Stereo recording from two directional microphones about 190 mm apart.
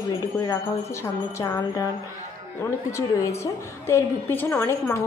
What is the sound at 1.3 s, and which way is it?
Speech, 15° left (ahead or behind).